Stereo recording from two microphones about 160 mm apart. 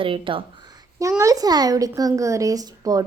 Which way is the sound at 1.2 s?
20° right (ahead or behind).